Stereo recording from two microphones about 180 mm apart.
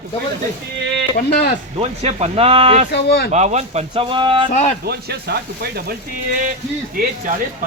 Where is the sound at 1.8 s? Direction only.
35° right (ahead or behind).